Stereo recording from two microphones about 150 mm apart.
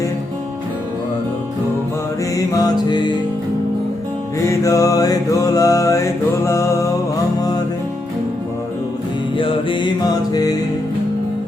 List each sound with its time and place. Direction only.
2.3 s music: 25° left (ahead or behind)
4.4 s mantra: 20° left (ahead or behind)
9.4 s music: 35° left (ahead or behind)